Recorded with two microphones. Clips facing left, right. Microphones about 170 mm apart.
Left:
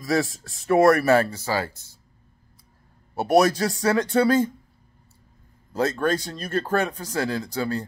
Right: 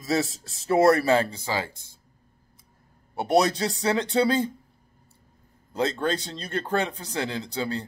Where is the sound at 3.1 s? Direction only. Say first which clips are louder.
Left 3 dB; 20° right (ahead or behind).